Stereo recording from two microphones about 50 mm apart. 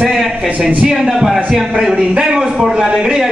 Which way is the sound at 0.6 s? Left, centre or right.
Right.